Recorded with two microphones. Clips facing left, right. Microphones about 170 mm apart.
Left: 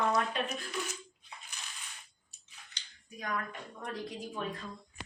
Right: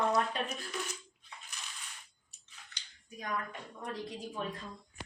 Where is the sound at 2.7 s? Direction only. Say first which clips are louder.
Left 2 dB; 15° left (ahead or behind).